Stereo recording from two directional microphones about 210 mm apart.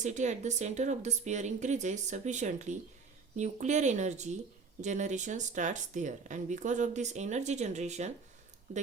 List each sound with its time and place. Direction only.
0.0 s speech: 35° right (ahead or behind)